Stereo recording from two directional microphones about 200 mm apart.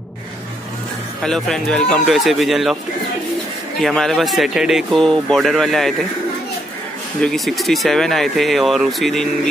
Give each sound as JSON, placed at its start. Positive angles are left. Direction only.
{"t": 1.2, "sound": "speech", "side_deg": 5}
{"t": 3.8, "sound": "speech", "side_deg": 0}
{"t": 7.2, "sound": "speech", "side_deg": 0}